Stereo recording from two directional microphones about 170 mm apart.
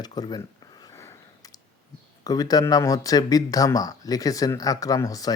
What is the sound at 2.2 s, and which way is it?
Speech, 20° left (ahead or behind).